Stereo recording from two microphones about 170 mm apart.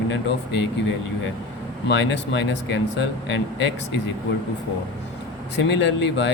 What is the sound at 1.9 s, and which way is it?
Speech, 90° left.